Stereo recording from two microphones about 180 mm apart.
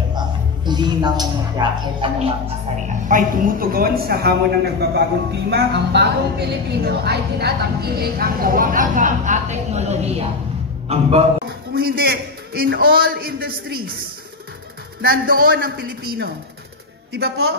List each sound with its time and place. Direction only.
0.7 s speech: 25° right (ahead or behind)
3.1 s a man's voice: 50° right (ahead or behind); by 11.2 s 35° right (ahead or behind)
11.7 s speech: 55° right (ahead or behind)
15.0 s speech: 55° right (ahead or behind)